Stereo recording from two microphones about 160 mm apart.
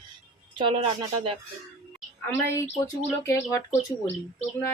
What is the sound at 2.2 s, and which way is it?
A woman's voice, 15° left (ahead or behind).